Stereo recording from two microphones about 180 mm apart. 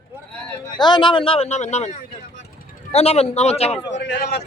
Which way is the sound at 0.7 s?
25° left (ahead or behind).